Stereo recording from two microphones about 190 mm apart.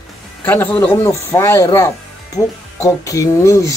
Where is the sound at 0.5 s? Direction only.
10° left (ahead or behind).